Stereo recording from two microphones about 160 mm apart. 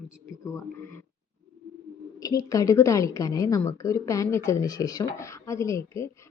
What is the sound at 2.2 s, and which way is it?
A woman's voice, 20° left (ahead or behind).